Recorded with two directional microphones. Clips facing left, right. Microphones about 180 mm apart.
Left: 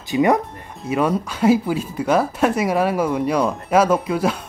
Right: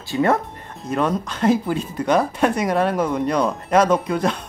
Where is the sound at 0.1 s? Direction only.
15° left (ahead or behind).